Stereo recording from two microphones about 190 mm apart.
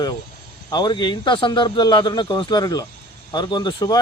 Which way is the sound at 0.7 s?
25° left (ahead or behind).